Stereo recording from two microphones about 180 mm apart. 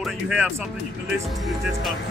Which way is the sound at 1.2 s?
Centre (ahead or behind).